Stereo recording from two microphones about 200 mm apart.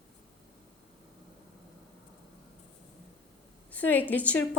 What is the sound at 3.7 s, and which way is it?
Speech, 10° left (ahead or behind).